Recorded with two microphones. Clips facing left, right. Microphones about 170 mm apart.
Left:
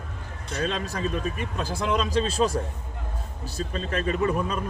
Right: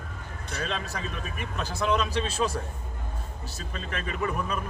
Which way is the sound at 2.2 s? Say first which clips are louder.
Left 4 dB; 40° left (ahead or behind).